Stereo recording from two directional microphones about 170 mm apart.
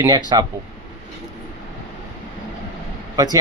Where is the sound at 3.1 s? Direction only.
20° right (ahead or behind).